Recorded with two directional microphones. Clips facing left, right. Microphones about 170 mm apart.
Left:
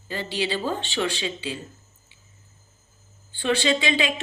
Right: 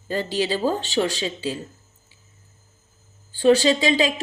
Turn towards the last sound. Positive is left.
turn(degrees=-40)  # may be behind; listen again after turning